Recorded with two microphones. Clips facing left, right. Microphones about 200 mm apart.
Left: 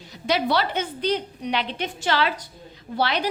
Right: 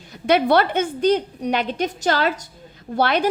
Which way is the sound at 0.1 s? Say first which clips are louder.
Right 6 dB; 55° right (ahead or behind).